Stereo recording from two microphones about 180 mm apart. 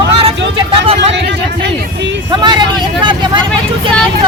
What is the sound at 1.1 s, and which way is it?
Speech, 85° right.